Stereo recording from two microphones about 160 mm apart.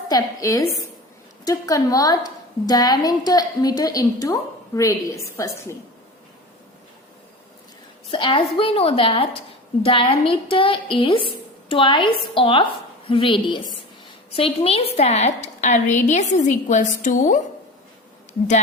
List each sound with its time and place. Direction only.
0.1 s a woman's voice: 20° left (ahead or behind)
8.0 s a woman's voice: 35° left (ahead or behind); by 17.4 s 55° left (ahead or behind)